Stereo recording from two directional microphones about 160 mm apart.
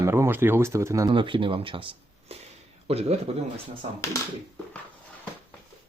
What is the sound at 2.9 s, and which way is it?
Speech, 40° right (ahead or behind).